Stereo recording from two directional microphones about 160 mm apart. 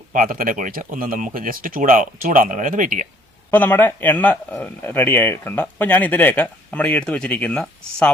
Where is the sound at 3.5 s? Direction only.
10° left (ahead or behind).